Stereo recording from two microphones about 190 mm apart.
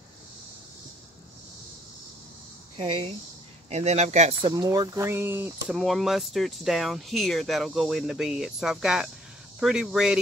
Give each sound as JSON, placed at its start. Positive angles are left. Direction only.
{"t": 2.8, "sound": "speech", "side_deg": -25}
{"t": 5.7, "sound": "speech", "side_deg": 0}